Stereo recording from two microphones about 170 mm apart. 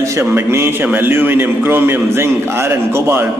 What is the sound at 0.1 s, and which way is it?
A man's voice, 15° right (ahead or behind).